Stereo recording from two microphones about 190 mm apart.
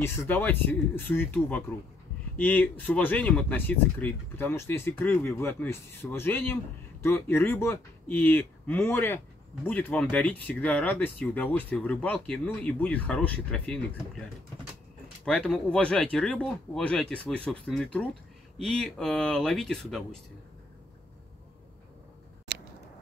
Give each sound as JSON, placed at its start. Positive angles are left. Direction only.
{"t": 0.0, "sound": "speech", "side_deg": 15}